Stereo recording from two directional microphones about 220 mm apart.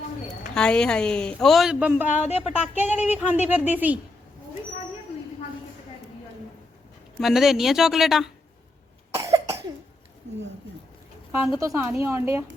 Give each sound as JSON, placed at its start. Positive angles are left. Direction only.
{"t": 0.5, "sound": "speech", "side_deg": 5}
{"t": 2.0, "sound": "a woman's voice", "side_deg": 30}
{"t": 2.4, "sound": "speech", "side_deg": -10}
{"t": 7.2, "sound": "speech", "side_deg": 0}
{"t": 9.1, "sound": "cough", "side_deg": -15}
{"t": 11.6, "sound": "speech", "side_deg": -15}